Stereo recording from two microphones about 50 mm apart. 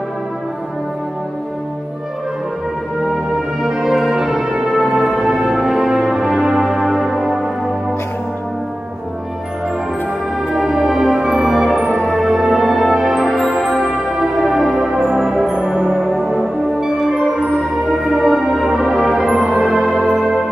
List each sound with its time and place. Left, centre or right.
3.6 s music: centre
10.5 s music: centre
13.8 s music: centre
14.2 s music: centre